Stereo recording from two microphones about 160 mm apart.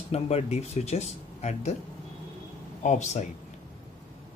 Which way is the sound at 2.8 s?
45° left (ahead or behind).